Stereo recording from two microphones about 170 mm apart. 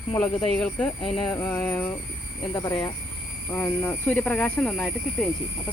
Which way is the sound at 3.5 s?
15° left (ahead or behind).